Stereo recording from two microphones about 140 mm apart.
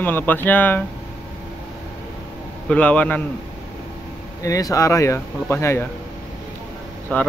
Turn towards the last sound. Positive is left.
turn(degrees=10)  # may be behind; listen again after turning